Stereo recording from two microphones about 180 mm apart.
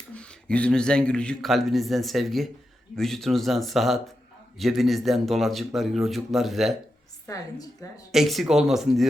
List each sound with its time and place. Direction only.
0.1 s speech: 5° left (ahead or behind)
7.3 s a woman's voice: 20° left (ahead or behind)
8.1 s speech: centre (ahead or behind)